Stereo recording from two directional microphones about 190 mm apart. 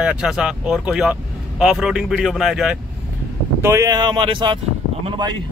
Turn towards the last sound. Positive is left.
turn(degrees=-25)  # may be behind; listen again after turning